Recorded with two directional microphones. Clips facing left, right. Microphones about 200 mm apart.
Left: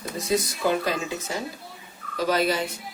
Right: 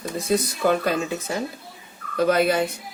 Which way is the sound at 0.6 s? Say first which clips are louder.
Right 5 dB; 55° right (ahead or behind).